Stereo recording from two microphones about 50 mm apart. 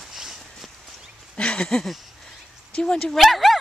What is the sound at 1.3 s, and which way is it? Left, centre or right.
Dog, left.